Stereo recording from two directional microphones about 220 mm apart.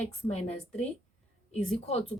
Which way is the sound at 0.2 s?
30° left (ahead or behind).